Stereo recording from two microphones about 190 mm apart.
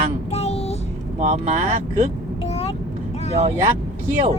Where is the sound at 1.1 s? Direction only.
35° right (ahead or behind).